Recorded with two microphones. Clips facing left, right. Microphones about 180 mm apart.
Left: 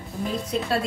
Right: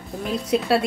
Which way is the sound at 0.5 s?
85° right.